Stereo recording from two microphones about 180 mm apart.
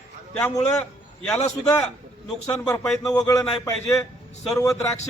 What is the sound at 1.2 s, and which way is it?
A man's voice, 10° left (ahead or behind).